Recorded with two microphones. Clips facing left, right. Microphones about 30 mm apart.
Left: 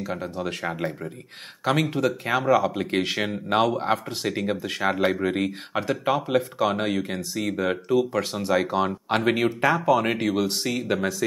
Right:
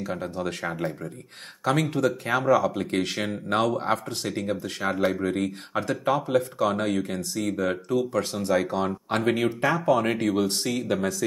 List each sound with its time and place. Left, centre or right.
0.0 s speech: centre
1.6 s speech: centre
4.4 s speech: left
9.8 s speech: centre